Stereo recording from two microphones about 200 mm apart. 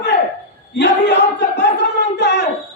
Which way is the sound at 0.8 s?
60° left (ahead or behind).